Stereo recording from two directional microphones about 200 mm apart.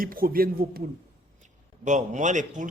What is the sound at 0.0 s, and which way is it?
Speech, 45° right (ahead or behind).